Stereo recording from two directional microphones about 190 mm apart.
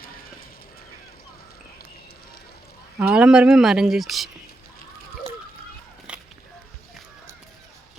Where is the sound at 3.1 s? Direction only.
5° right (ahead or behind).